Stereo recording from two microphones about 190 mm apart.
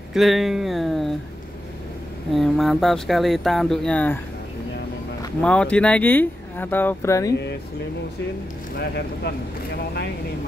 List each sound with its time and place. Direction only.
0.1 s speech: centre (ahead or behind)
2.3 s speech: centre (ahead or behind)
5.4 s speech: 5° left (ahead or behind)
8.7 s speech: 60° left (ahead or behind)